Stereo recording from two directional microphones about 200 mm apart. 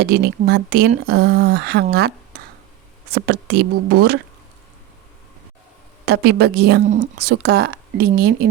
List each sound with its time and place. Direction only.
0.0 s speech: 50° right (ahead or behind)
6.1 s a woman's voice: 55° right (ahead or behind)